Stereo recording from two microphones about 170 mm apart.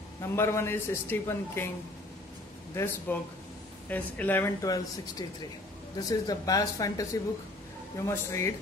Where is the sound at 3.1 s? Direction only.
10° left (ahead or behind).